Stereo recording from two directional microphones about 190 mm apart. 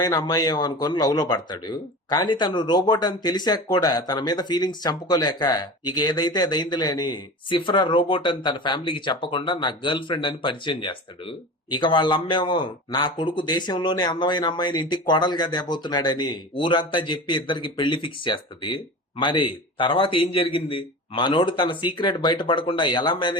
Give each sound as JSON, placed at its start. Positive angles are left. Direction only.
{"t": 0.0, "sound": "a man's voice", "side_deg": 20}